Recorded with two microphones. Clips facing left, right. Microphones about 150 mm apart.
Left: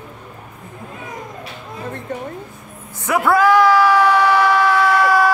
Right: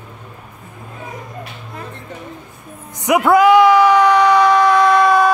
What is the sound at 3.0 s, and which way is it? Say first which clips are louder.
Yell: right 4 dB; 15° right (ahead or behind).